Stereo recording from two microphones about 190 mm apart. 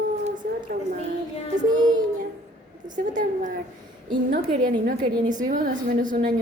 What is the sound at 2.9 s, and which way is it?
A woman's voice, 45° right (ahead or behind).